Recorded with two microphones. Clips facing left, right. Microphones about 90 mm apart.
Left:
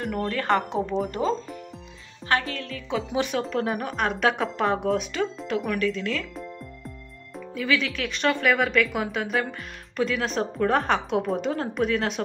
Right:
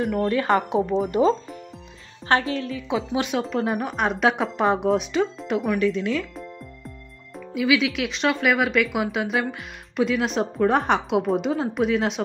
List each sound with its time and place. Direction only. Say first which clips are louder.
0.0 s speech: right 5 dB; 5° right (ahead or behind)
2.2 s speech: right 4 dB; 25° right (ahead or behind)
3.3 s speech: right 2 dB; 5° right (ahead or behind)